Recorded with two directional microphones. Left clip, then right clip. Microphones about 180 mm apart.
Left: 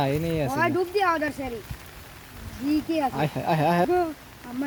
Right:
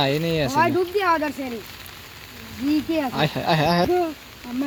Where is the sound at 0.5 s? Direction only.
35° right (ahead or behind).